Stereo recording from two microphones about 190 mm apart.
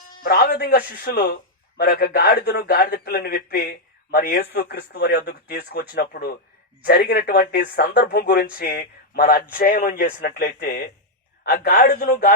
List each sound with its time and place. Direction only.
0.2 s speech: 50° left (ahead or behind)